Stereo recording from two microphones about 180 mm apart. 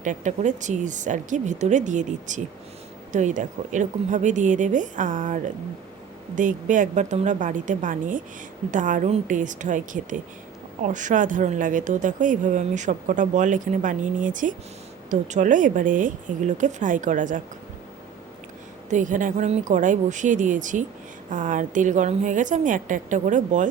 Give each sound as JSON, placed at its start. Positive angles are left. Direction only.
{"t": 0.0, "sound": "speech", "side_deg": -45}
{"t": 18.9, "sound": "speech", "side_deg": -45}